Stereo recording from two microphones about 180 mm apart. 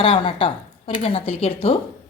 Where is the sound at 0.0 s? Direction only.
30° left (ahead or behind).